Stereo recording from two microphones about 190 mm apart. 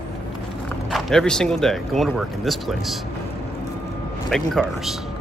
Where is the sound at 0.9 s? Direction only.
5° left (ahead or behind).